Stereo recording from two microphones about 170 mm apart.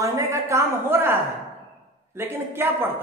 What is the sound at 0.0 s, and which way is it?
A woman's voice, 20° right (ahead or behind).